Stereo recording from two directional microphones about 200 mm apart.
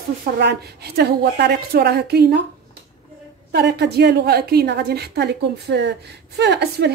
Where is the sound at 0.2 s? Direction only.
55° right (ahead or behind).